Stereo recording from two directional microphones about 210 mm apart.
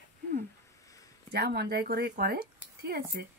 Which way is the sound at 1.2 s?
50° right (ahead or behind).